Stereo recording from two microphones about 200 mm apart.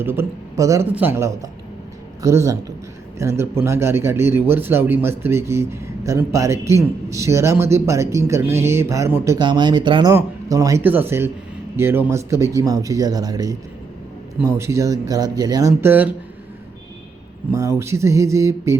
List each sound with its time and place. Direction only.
0.0 s speech: 10° right (ahead or behind)
17.5 s speech: 15° right (ahead or behind)